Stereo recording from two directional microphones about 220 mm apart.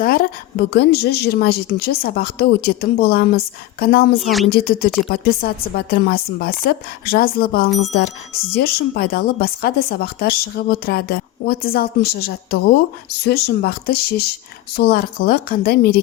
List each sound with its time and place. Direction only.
0.0 s a sound: 40° left (ahead or behind)
0.7 s speech: 45° left (ahead or behind)
4.2 s speech: centre (ahead or behind)
4.5 s speech: 45° left (ahead or behind)